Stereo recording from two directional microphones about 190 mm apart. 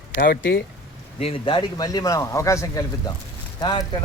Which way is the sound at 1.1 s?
30° left (ahead or behind).